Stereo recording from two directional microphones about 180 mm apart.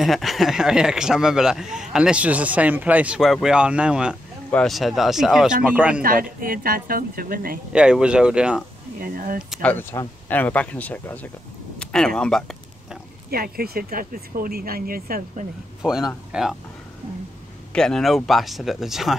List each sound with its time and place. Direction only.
0.0 s speech: centre (ahead or behind)
6.0 s speech: 50° right (ahead or behind)
7.7 s speech: 5° right (ahead or behind)
9.0 s speech: 50° right (ahead or behind)
9.5 s speech: 10° left (ahead or behind)
11.8 s a sound: 5° left (ahead or behind)
13.3 s speech: 55° right (ahead or behind)
15.8 s speech: centre (ahead or behind)
17.7 s speech: 5° left (ahead or behind)